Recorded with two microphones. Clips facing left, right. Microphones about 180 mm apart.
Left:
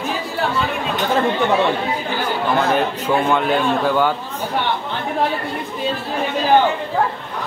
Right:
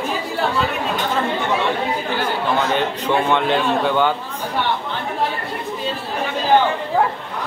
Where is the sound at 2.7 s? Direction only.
5° left (ahead or behind).